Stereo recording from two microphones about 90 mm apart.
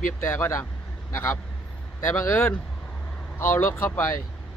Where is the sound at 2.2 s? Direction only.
25° left (ahead or behind).